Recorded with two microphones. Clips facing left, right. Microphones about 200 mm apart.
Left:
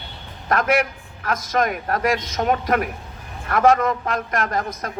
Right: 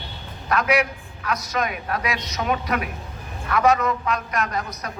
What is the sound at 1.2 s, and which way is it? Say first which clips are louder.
A woman's voice: left 4 dB; 50° left (ahead or behind).